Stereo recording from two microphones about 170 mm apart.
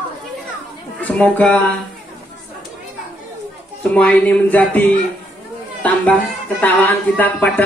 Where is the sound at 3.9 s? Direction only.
5° left (ahead or behind).